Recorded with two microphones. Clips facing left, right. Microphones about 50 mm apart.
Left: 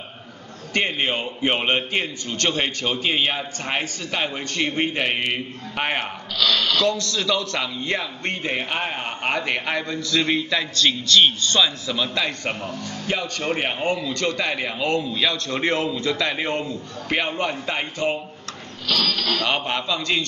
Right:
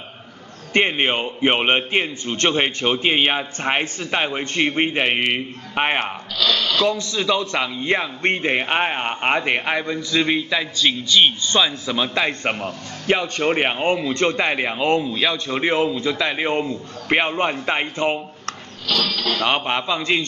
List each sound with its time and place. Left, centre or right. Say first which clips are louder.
0.7 s a man's voice: right 4 dB; right
18.9 s speech: right 1 dB; centre
19.3 s a man's voice: right 5 dB; right